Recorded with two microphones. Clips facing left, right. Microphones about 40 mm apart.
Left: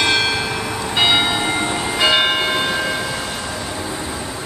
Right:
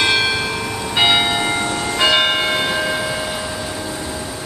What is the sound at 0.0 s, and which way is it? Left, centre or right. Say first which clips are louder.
Church bell: right 1 dB; centre.